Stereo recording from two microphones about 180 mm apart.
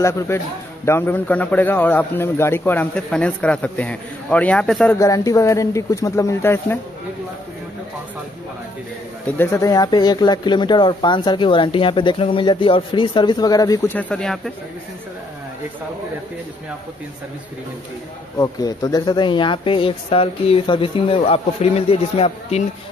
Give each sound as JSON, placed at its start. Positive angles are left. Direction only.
{"t": 0.8, "sound": "a man's voice", "side_deg": 10}
{"t": 4.9, "sound": "a man's voice", "side_deg": 20}
{"t": 9.4, "sound": "speech", "side_deg": 15}
{"t": 13.9, "sound": "speech", "side_deg": 5}
{"t": 18.4, "sound": "speech", "side_deg": 20}